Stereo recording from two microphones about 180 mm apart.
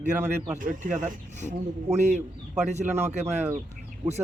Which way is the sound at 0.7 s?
45° right (ahead or behind).